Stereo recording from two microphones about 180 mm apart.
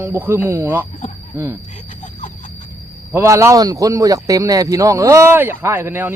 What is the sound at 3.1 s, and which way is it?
Speech, 15° right (ahead or behind).